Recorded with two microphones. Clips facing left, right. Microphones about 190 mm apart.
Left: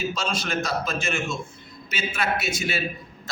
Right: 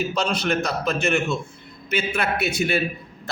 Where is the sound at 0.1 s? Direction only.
60° right (ahead or behind).